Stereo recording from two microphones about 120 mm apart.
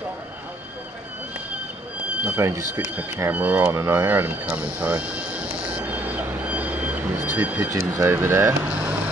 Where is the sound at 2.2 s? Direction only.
20° right (ahead or behind).